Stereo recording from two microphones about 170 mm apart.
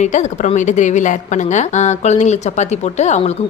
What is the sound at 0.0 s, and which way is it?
A woman's voice, 45° left (ahead or behind).